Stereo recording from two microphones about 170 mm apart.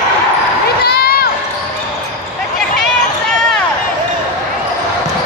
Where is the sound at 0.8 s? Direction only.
65° left (ahead or behind).